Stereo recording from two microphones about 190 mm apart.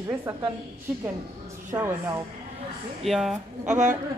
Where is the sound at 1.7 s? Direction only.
15° right (ahead or behind).